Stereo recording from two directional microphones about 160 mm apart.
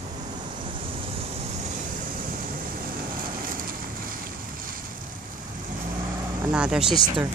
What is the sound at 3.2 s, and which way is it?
Vehicle, 60° right (ahead or behind).